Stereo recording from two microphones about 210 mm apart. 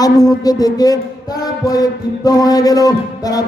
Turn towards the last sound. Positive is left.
turn(degrees=15)  # may be behind; listen again after turning